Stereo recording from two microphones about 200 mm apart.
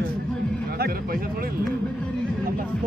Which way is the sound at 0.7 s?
50° right (ahead or behind).